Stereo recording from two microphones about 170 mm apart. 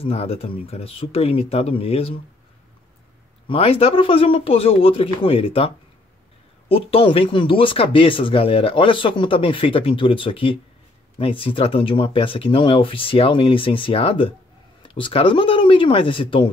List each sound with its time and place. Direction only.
0.0 s speech: 35° left (ahead or behind)
3.4 s speech: 35° left (ahead or behind)
6.7 s speech: 35° left (ahead or behind)